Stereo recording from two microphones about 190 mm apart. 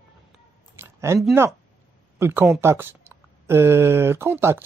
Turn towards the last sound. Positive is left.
turn(degrees=-10)  # may be behind; listen again after turning